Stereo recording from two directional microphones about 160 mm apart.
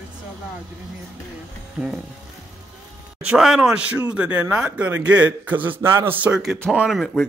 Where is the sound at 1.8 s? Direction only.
10° right (ahead or behind).